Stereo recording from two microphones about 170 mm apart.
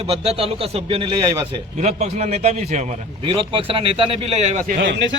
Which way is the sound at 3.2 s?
30° right (ahead or behind).